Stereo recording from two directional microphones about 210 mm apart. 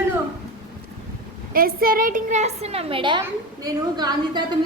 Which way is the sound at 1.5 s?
45° right (ahead or behind).